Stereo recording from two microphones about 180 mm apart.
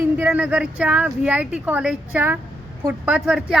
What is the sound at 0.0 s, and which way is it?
A woman's voice, 10° right (ahead or behind).